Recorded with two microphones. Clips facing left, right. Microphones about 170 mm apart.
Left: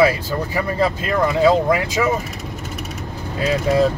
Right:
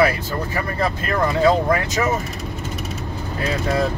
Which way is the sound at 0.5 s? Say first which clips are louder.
Left 4 dB; 15° left (ahead or behind).